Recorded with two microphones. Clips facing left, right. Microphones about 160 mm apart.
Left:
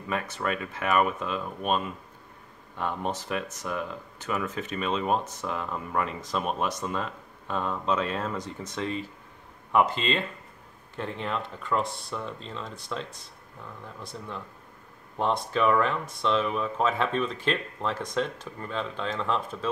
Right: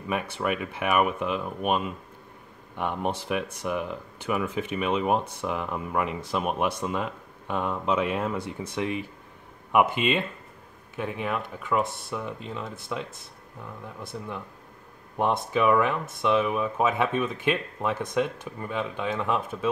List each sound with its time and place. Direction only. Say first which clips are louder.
0.1 s speech: right 2 dB; 15° right (ahead or behind)
14.1 s speech: right 5 dB; 5° right (ahead or behind)
15.5 s speech: right 2 dB; 10° right (ahead or behind)